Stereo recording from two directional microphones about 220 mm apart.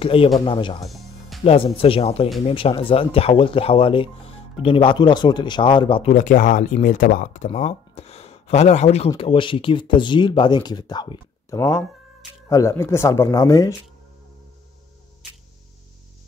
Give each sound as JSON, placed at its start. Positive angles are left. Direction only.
{"t": 0.0, "sound": "speech", "side_deg": 25}
{"t": 0.8, "sound": "music", "side_deg": 0}
{"t": 1.4, "sound": "speech", "side_deg": 25}